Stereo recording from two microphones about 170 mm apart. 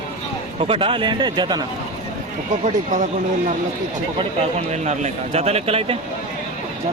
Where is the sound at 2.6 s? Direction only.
50° right (ahead or behind).